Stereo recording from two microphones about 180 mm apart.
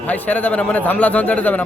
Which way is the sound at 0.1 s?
10° left (ahead or behind).